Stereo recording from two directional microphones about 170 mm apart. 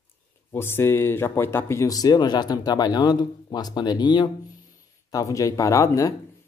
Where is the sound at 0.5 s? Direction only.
15° left (ahead or behind).